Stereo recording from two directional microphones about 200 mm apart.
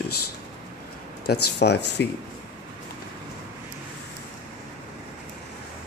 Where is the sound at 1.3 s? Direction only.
55° left (ahead or behind).